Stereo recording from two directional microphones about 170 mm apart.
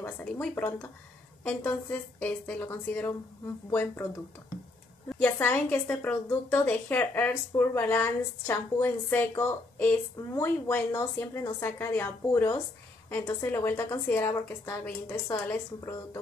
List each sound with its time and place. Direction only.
0.0 s a woman's voice: 10° left (ahead or behind)
5.2 s a woman's voice: 10° left (ahead or behind)